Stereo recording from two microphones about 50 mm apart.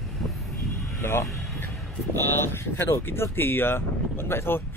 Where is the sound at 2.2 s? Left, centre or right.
Left.